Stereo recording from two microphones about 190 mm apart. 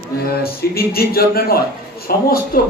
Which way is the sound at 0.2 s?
55° left (ahead or behind).